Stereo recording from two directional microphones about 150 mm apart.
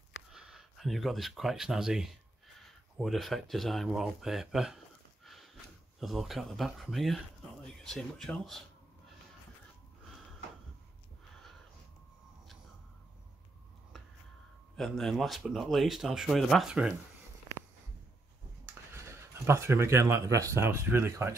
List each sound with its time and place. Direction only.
0.3 s speech: 5° right (ahead or behind)
5.2 s a sound: centre (ahead or behind)
5.9 s speech: centre (ahead or behind)
13.9 s a sound: centre (ahead or behind)
14.8 s speech: centre (ahead or behind)
18.9 s speech: 20° right (ahead or behind)